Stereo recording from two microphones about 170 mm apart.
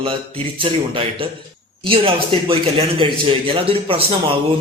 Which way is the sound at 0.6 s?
30° right (ahead or behind).